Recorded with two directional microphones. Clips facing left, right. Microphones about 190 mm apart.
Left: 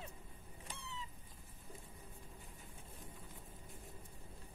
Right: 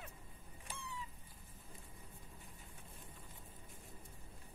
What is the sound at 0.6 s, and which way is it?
Cat, 25° left (ahead or behind).